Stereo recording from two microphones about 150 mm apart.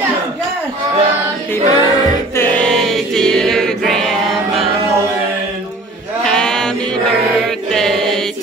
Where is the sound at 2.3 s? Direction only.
10° left (ahead or behind).